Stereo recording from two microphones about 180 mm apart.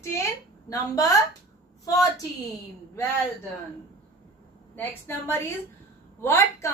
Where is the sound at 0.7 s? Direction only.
20° left (ahead or behind).